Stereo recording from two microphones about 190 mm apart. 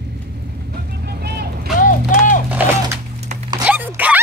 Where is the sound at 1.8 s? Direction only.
45° left (ahead or behind).